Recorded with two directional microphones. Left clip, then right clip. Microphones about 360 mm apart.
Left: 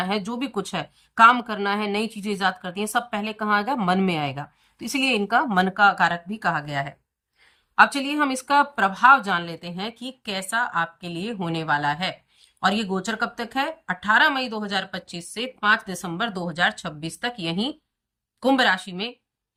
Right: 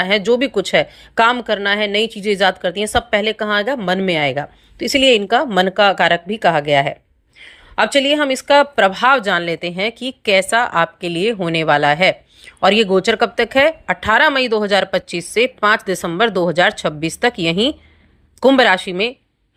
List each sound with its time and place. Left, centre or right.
0.4 s a woman's voice: centre
6.2 s speech: right
7.8 s speech: centre